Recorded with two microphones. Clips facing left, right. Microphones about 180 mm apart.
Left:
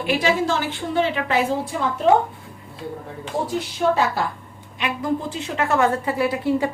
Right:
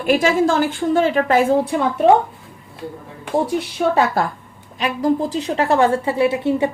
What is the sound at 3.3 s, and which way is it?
Speech, 55° right (ahead or behind).